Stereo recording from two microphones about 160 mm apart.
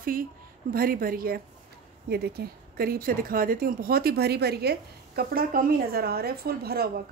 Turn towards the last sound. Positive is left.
turn(degrees=-75)  # may be behind; listen again after turning